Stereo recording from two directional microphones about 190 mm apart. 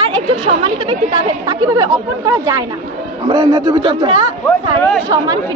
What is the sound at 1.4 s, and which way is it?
Speech, 20° right (ahead or behind).